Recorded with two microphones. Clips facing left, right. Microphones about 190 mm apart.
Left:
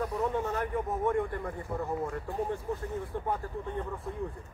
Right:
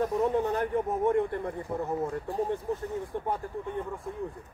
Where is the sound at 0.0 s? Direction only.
30° right (ahead or behind).